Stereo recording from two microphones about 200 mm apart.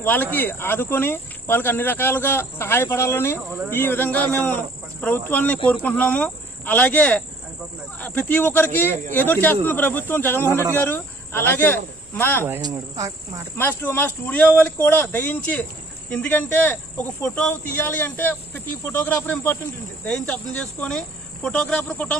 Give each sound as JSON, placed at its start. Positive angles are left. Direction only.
{"t": 0.0, "sound": "speech", "side_deg": 10}
{"t": 12.6, "sound": "cricket", "side_deg": -15}
{"t": 13.6, "sound": "speech", "side_deg": 10}
{"t": 20.8, "sound": "speech", "side_deg": 5}